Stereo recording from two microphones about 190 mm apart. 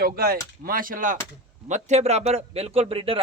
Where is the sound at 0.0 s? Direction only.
50° right (ahead or behind).